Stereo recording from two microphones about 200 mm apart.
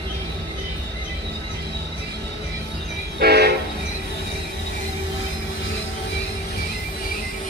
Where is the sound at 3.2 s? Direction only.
55° right (ahead or behind).